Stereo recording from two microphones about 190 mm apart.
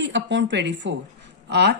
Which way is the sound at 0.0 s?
70° right (ahead or behind).